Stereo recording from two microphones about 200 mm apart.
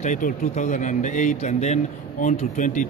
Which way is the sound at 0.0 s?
40° left (ahead or behind).